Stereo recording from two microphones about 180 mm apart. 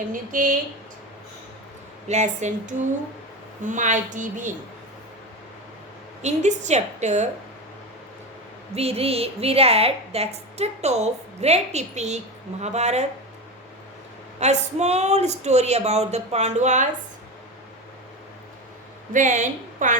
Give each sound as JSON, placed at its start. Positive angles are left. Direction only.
{"t": 0.1, "sound": "a woman's voice", "side_deg": -50}
{"t": 2.0, "sound": "a woman's voice", "side_deg": -40}
{"t": 6.2, "sound": "a woman's voice", "side_deg": -40}
{"t": 8.7, "sound": "a woman's voice", "side_deg": -35}
{"t": 14.3, "sound": "a woman's voice", "side_deg": -40}
{"t": 19.1, "sound": "a woman's voice", "side_deg": -45}